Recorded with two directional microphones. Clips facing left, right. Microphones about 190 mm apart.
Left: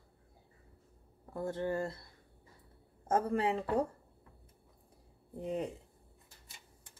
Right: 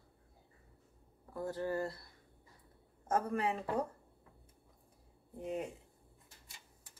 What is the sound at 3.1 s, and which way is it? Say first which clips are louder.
Speech: left 3 dB; 30° left (ahead or behind).